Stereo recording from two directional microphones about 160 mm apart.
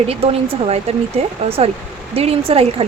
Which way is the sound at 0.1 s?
35° right (ahead or behind).